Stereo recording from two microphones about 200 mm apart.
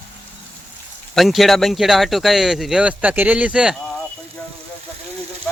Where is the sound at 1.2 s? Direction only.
Centre (ahead or behind).